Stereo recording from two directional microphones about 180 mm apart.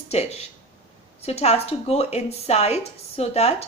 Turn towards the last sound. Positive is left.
turn(degrees=35)  # may be behind; listen again after turning